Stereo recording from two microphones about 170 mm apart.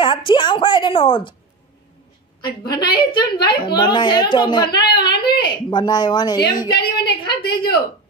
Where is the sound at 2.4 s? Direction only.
25° left (ahead or behind).